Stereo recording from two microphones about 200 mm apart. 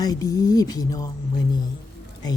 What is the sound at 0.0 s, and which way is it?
Speech, 20° left (ahead or behind).